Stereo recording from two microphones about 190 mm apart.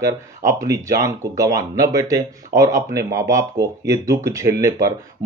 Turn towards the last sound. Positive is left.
turn(degrees=-15)  # may be behind; listen again after turning